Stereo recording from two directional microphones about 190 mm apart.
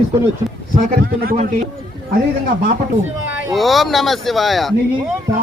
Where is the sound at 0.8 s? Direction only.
50° right (ahead or behind).